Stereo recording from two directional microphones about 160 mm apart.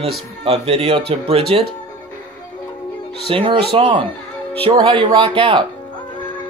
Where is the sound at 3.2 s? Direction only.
35° right (ahead or behind).